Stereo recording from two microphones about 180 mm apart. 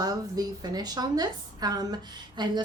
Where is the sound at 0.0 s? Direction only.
20° right (ahead or behind).